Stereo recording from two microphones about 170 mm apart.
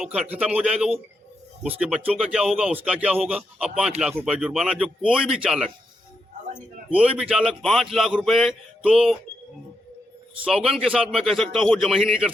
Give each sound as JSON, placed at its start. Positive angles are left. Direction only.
{"t": 0.0, "sound": "a man's voice", "side_deg": -5}
{"t": 6.9, "sound": "a man's voice", "side_deg": -5}
{"t": 10.4, "sound": "a man's voice", "side_deg": -5}